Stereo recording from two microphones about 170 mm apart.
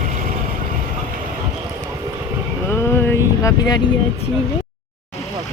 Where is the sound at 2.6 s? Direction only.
15° left (ahead or behind).